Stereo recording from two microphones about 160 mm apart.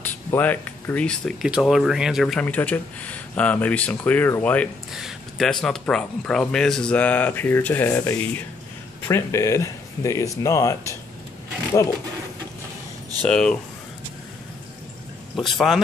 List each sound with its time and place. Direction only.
0.0 s speech: 10° left (ahead or behind)
13.2 s speech: 5° left (ahead or behind)
15.3 s speech: centre (ahead or behind)